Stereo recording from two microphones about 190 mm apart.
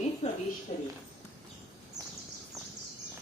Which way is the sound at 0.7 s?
35° left (ahead or behind).